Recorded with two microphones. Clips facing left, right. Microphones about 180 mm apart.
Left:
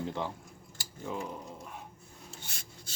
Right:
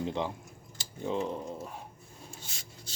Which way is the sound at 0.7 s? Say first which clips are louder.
Right 6 dB; 20° right (ahead or behind).